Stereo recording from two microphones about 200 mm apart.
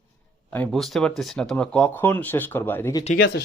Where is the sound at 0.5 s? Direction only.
5° left (ahead or behind).